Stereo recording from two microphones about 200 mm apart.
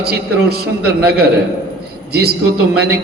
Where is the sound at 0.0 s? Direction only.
55° right (ahead or behind).